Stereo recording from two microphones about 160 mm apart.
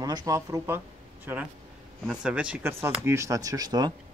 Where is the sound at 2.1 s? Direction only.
5° right (ahead or behind); by 3.9 s 25° right (ahead or behind).